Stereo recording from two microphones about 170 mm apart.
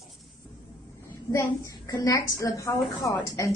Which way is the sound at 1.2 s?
20° left (ahead or behind).